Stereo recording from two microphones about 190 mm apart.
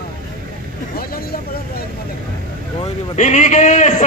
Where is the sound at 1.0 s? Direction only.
50° left (ahead or behind).